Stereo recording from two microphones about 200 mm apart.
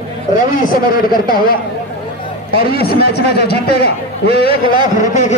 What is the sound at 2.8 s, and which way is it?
Speech, 50° left (ahead or behind).